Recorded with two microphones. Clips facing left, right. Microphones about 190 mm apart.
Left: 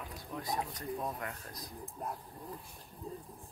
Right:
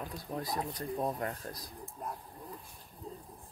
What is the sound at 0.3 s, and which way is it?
Speech, 35° right (ahead or behind).